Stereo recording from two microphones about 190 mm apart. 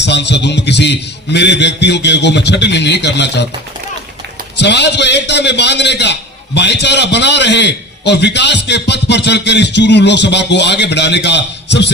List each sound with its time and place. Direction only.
0.0 s a man's voice: 65° left (ahead or behind)
4.5 s a man's voice: 65° left (ahead or behind)